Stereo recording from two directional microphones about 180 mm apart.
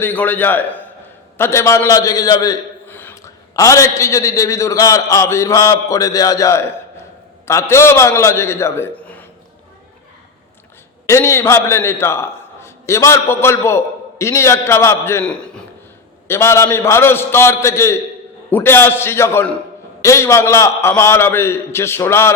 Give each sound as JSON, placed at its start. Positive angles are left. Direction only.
{"t": 0.0, "sound": "a man's voice", "side_deg": 10}
{"t": 11.1, "sound": "a man's voice", "side_deg": 15}